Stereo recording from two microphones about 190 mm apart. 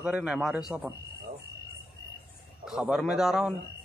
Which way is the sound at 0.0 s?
5° right (ahead or behind).